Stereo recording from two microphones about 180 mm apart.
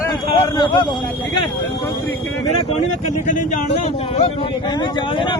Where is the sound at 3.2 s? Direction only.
45° left (ahead or behind).